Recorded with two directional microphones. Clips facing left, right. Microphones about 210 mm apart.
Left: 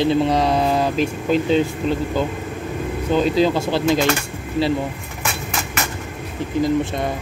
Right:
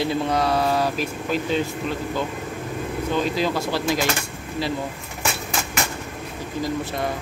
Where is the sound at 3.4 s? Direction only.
25° left (ahead or behind).